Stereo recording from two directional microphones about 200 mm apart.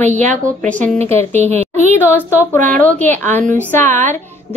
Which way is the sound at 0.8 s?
30° right (ahead or behind).